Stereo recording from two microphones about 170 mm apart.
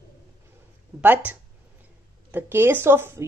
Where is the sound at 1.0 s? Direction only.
10° right (ahead or behind).